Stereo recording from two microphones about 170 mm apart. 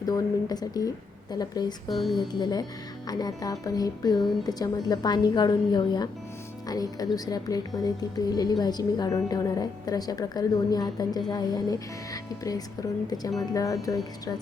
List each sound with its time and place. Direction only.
0.0 s a woman's voice: 25° left (ahead or behind)
1.9 s speech: centre (ahead or behind)
2.1 s a woman's voice: 25° left (ahead or behind)